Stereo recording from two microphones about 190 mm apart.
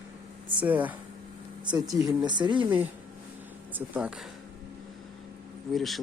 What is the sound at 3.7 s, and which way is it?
Speech, 5° right (ahead or behind).